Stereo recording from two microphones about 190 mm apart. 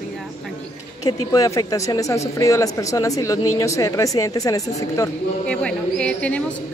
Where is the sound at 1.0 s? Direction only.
20° left (ahead or behind).